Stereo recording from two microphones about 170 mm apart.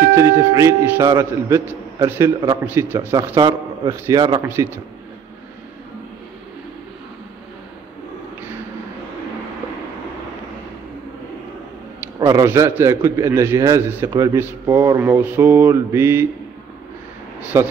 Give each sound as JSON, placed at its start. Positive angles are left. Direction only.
{"t": 0.1, "sound": "a man's voice", "side_deg": -15}
{"t": 12.2, "sound": "speech", "side_deg": -20}
{"t": 17.4, "sound": "speech", "side_deg": -10}